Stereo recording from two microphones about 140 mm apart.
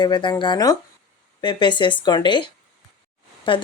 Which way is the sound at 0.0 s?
30° left (ahead or behind).